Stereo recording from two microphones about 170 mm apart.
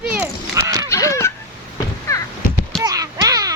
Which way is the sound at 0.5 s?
20° right (ahead or behind).